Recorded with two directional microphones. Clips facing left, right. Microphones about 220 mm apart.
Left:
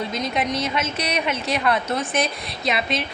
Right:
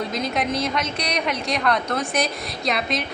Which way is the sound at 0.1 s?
Centre (ahead or behind).